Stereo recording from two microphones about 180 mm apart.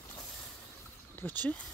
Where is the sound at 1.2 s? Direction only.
10° left (ahead or behind).